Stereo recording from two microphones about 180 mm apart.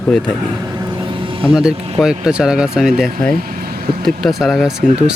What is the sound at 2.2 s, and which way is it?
Speech, 5° right (ahead or behind).